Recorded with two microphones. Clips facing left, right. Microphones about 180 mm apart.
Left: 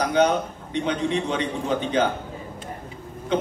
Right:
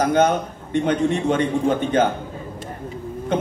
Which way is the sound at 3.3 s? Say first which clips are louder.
Right 1 dB; 50° right (ahead or behind).